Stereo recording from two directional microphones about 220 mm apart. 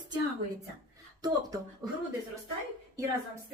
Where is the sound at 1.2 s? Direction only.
20° right (ahead or behind).